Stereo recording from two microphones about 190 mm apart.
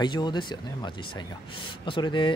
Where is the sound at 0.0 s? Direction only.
25° left (ahead or behind).